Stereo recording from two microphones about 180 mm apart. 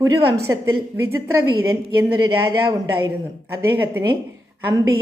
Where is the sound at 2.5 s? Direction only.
15° right (ahead or behind).